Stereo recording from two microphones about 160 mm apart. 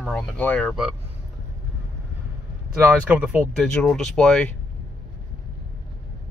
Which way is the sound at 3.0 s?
10° right (ahead or behind).